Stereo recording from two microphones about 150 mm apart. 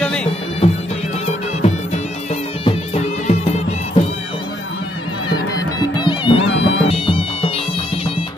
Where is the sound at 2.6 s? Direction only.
45° left (ahead or behind).